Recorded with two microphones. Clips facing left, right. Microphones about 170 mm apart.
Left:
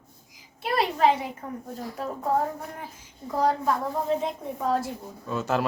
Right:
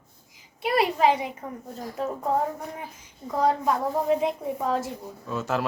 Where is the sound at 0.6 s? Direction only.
Centre (ahead or behind).